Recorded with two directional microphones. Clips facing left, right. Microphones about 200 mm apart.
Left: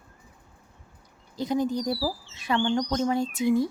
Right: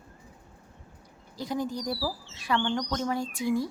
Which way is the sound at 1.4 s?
20° left (ahead or behind).